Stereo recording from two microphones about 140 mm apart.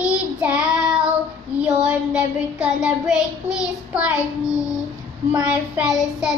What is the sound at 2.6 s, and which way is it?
Child singing, 5° right (ahead or behind).